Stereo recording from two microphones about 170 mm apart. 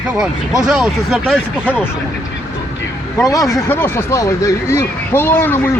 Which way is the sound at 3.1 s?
20° left (ahead or behind).